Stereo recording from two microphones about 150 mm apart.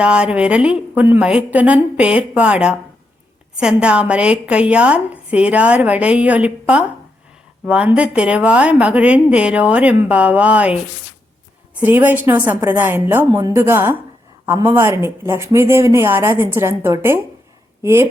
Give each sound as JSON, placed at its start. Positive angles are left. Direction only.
{"t": 0.0, "sound": "speech", "side_deg": -5}
{"t": 11.8, "sound": "speech", "side_deg": -15}